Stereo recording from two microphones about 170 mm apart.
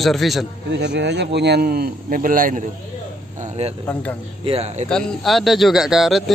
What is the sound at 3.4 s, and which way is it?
A man's voice, 40° right (ahead or behind).